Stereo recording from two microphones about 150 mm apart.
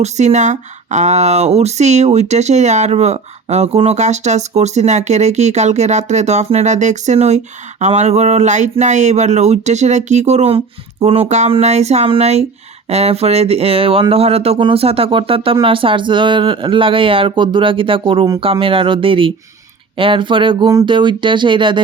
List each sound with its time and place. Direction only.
0.0 s speech: 50° right (ahead or behind); by 21.8 s 35° right (ahead or behind)